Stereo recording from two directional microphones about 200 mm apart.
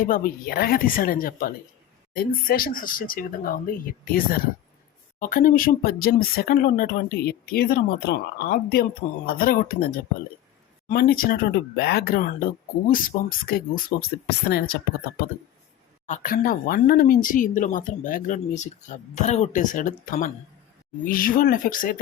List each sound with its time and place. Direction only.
0.0 s speech: 45° left (ahead or behind)
16.0 s speech: 40° left (ahead or behind)